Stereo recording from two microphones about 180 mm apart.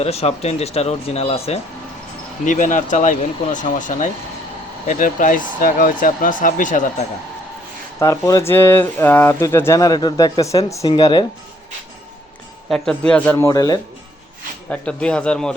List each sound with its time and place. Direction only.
0.0 s speech: 35° left (ahead or behind)
7.9 s speech: 20° left (ahead or behind)
12.6 s speech: centre (ahead or behind); by 13.7 s 20° left (ahead or behind)
14.7 s a man's voice: 5° left (ahead or behind)